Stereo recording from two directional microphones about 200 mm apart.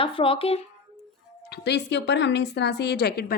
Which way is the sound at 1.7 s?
60° left (ahead or behind).